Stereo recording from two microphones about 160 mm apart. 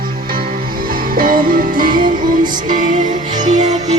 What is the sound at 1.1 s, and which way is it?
Music, 60° right (ahead or behind).